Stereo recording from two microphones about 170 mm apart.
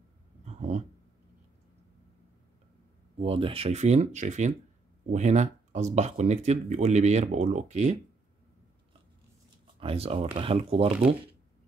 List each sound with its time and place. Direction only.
0.5 s a sound: 40° right (ahead or behind)
3.2 s speech: 35° right (ahead or behind)
9.8 s speech: 35° right (ahead or behind)